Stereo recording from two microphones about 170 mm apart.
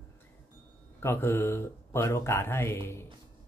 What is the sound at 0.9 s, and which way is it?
Speech, 15° left (ahead or behind).